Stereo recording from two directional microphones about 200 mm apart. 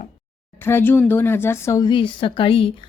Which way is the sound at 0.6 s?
10° left (ahead or behind).